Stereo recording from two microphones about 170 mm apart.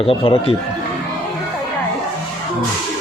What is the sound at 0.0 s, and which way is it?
Speech, 30° left (ahead or behind).